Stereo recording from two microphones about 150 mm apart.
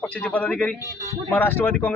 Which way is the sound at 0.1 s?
10° left (ahead or behind).